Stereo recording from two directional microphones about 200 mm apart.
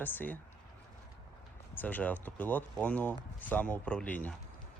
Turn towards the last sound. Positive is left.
turn(degrees=5)  # may be behind; listen again after turning